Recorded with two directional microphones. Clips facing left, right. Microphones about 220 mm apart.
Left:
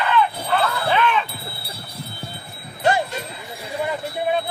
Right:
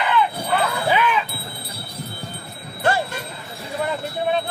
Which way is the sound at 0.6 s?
10° right (ahead or behind).